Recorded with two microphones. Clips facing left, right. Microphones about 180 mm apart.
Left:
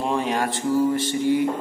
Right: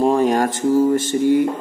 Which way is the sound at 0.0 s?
40° right (ahead or behind).